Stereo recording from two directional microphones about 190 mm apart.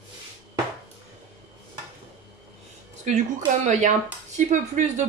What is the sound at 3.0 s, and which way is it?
Speech, 40° right (ahead or behind).